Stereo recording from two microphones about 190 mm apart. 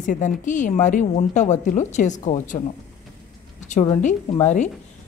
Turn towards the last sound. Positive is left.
turn(degrees=40)  # may be behind; listen again after turning